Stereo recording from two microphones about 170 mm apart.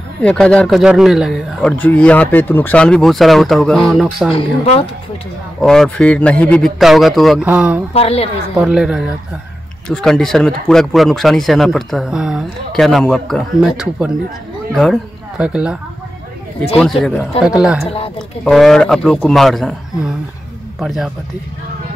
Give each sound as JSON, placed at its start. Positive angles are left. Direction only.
{"t": 0.2, "sound": "speech", "side_deg": 5}
{"t": 5.6, "sound": "speech", "side_deg": 5}
{"t": 7.9, "sound": "a woman's voice", "side_deg": 35}
{"t": 8.5, "sound": "speech", "side_deg": -5}